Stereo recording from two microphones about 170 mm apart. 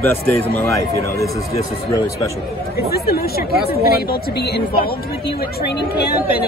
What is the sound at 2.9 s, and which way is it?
A woman's voice, 65° left (ahead or behind).